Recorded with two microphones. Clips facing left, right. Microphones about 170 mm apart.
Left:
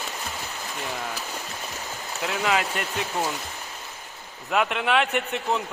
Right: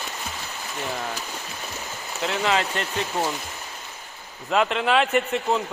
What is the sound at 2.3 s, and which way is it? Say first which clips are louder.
Speech: right 1 dB; 5° left (ahead or behind).